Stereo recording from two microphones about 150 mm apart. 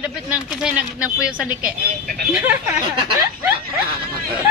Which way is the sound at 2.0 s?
90° right.